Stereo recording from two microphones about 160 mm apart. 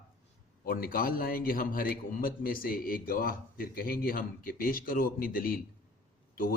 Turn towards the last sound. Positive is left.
turn(degrees=60)  # may be behind; listen again after turning